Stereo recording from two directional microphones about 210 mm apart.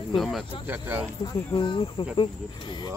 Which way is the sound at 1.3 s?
25° left (ahead or behind).